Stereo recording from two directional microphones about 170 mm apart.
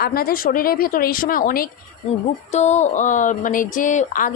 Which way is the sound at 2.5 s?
40° left (ahead or behind).